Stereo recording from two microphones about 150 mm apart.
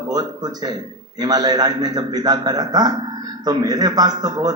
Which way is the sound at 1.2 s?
25° right (ahead or behind).